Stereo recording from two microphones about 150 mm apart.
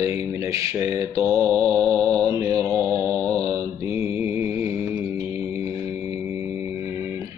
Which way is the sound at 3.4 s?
20° right (ahead or behind).